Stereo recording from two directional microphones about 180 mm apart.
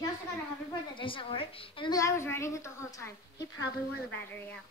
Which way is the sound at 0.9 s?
30° left (ahead or behind).